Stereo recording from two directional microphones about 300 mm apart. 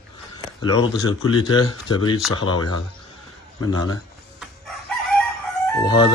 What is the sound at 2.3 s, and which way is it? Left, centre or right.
Speech, left.